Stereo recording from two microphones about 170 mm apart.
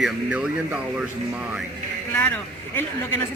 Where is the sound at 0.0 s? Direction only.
10° right (ahead or behind).